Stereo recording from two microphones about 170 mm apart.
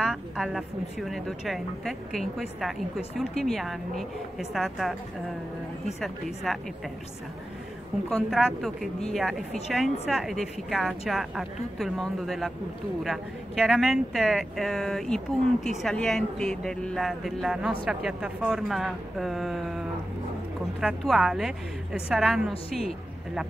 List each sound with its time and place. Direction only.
0.0 s speech: 5° right (ahead or behind)
6.0 s speech: centre (ahead or behind)
8.1 s speech: 5° right (ahead or behind)
20.8 s speech: 5° right (ahead or behind)
22.5 s a woman's voice: 35° left (ahead or behind)